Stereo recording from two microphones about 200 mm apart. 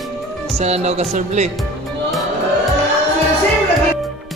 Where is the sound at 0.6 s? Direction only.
30° right (ahead or behind).